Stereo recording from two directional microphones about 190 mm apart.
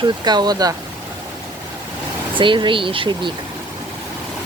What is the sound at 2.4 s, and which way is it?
Speech, 25° right (ahead or behind).